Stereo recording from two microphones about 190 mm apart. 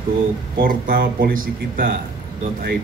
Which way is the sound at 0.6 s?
50° right (ahead or behind).